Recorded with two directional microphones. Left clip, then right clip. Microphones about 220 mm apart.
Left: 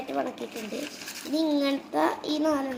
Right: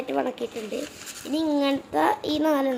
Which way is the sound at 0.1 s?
30° right (ahead or behind).